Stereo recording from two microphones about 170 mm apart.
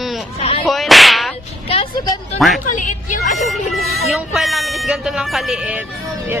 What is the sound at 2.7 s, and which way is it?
Speech, 50° left (ahead or behind).